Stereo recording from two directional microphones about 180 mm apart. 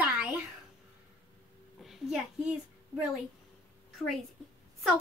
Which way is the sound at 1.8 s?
Centre (ahead or behind).